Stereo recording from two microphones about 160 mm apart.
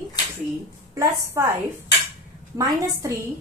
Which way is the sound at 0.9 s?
20° right (ahead or behind).